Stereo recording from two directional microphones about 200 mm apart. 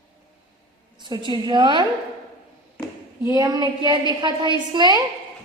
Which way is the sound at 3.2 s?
15° right (ahead or behind).